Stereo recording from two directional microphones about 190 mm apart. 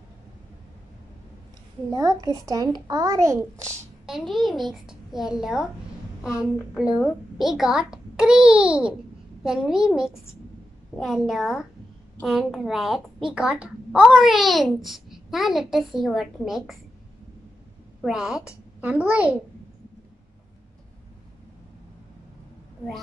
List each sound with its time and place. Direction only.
1.9 s a child's voice: 20° right (ahead or behind)
4.0 s a child's voice: centre (ahead or behind)
6.7 s a child's voice: 5° right (ahead or behind)
18.0 s a child's voice: 5° right (ahead or behind)